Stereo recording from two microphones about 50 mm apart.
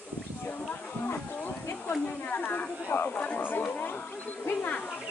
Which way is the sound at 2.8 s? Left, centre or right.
Left.